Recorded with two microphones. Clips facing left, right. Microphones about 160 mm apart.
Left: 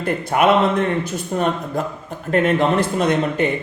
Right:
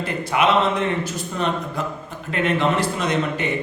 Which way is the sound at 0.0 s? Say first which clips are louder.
Left 3 dB; 50° left (ahead or behind).